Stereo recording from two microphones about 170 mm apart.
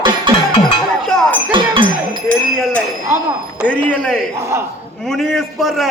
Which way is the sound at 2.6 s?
Centre (ahead or behind).